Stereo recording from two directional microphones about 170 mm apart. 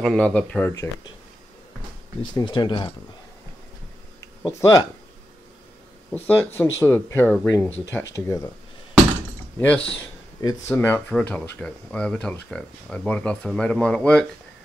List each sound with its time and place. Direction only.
0.0 s speech: 5° left (ahead or behind)
2.3 s speech: 25° left (ahead or behind)
4.4 s speech: 15° left (ahead or behind)
6.1 s speech: 10° left (ahead or behind)
9.6 s speech: 10° left (ahead or behind)